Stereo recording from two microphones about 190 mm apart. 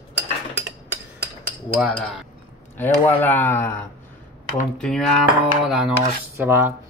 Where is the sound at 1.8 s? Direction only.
Centre (ahead or behind).